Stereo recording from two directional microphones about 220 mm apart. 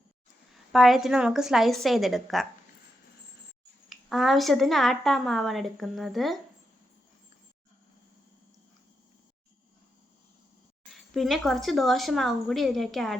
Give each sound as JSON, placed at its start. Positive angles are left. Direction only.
{"t": 0.7, "sound": "a woman's voice", "side_deg": 0}
{"t": 3.8, "sound": "a woman's voice", "side_deg": 0}
{"t": 10.9, "sound": "a woman's voice", "side_deg": 0}